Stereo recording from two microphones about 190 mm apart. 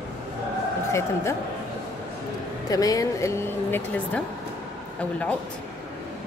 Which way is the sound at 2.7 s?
20° left (ahead or behind).